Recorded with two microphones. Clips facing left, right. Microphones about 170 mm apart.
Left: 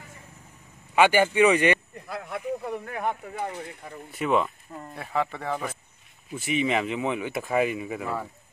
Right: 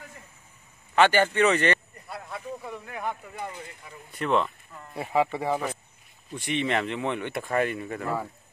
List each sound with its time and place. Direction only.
0.9 s speech: 10° left (ahead or behind)
2.0 s a sound: 85° left
2.6 s speech: 55° left (ahead or behind)
4.1 s speech: 5° left (ahead or behind)
4.9 s speech: 10° right (ahead or behind)
6.3 s speech: 5° left (ahead or behind)